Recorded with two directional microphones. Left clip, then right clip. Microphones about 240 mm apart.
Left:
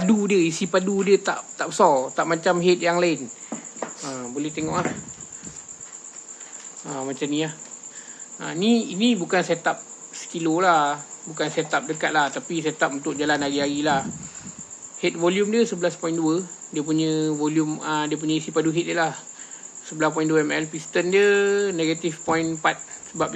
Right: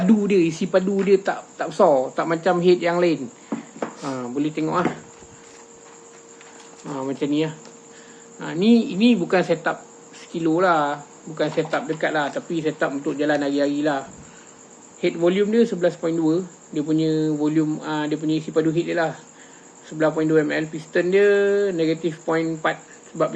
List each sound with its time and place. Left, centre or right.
0.0 s speech: centre
4.0 s speech: centre
6.8 s speech: centre
15.0 s speech: centre